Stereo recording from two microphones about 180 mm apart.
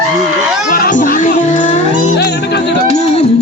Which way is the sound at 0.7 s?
50° left (ahead or behind).